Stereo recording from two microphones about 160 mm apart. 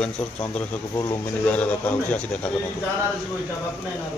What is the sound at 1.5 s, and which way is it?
A man's voice, 10° left (ahead or behind).